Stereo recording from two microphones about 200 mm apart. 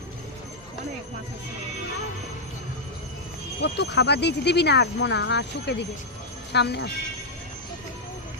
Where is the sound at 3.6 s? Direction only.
60° left (ahead or behind).